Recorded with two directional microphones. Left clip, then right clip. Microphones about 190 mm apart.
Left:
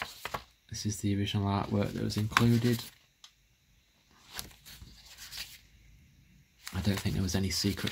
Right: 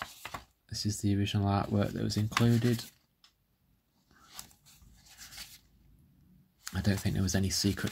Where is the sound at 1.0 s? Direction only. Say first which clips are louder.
Even; 15° right (ahead or behind).